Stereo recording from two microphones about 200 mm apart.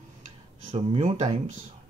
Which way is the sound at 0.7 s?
25° right (ahead or behind).